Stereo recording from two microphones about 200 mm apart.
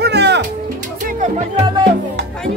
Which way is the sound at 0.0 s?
55° right (ahead or behind).